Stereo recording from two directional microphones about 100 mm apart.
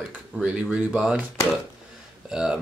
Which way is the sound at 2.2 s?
10° right (ahead or behind).